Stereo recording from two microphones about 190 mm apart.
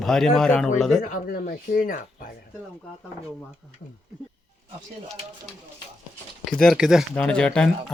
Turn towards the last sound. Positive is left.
turn(degrees=5)  # may be behind; listen again after turning